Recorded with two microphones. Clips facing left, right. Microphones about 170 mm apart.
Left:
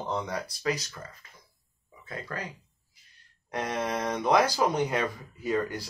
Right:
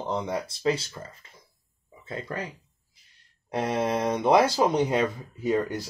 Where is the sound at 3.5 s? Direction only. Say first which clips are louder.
Right 5 dB; 25° right (ahead or behind).